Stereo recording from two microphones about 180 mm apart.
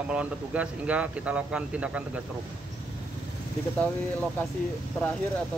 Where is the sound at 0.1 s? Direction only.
5° right (ahead or behind).